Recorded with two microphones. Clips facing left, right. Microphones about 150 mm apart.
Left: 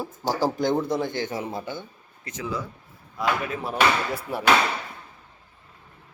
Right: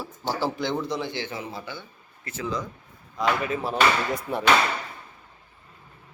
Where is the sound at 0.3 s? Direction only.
40° left (ahead or behind).